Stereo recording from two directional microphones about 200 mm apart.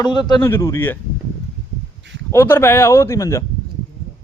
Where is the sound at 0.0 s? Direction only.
20° left (ahead or behind).